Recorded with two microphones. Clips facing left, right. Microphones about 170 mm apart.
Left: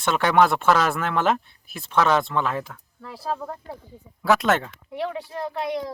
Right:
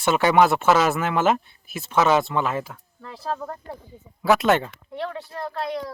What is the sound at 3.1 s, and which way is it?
Speech, 10° left (ahead or behind).